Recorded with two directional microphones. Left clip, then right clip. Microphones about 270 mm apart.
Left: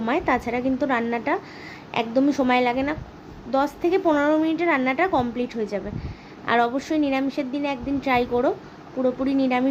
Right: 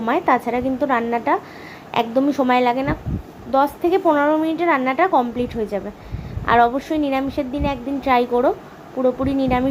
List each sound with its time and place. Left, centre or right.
0.0 s a woman's voice: centre